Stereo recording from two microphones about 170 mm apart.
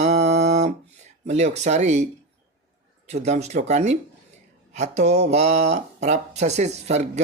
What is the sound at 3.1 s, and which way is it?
Speech, 40° right (ahead or behind).